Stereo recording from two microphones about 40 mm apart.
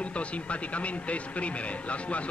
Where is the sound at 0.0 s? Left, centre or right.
Left.